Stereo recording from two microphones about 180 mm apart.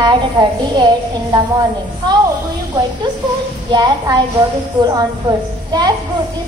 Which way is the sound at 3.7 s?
25° right (ahead or behind).